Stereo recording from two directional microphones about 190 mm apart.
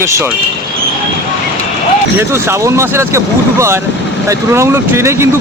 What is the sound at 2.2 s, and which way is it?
Speech, 10° right (ahead or behind).